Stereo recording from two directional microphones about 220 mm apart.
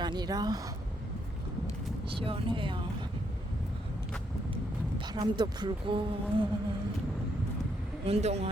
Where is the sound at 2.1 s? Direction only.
25° right (ahead or behind).